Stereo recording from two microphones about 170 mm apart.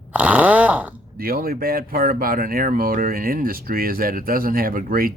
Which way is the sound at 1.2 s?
60° right (ahead or behind).